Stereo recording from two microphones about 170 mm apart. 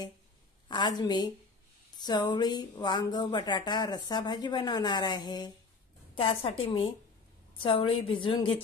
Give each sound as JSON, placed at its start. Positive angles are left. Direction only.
{"t": 0.7, "sound": "a woman's voice", "side_deg": 25}